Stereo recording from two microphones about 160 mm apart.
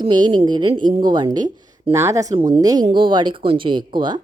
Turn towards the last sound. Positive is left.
turn(degrees=-30)  # may be behind; listen again after turning